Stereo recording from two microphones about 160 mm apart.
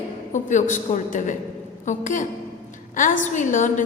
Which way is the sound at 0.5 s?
50° left (ahead or behind).